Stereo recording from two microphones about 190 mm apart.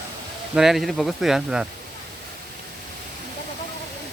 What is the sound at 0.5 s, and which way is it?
Speech, centre (ahead or behind).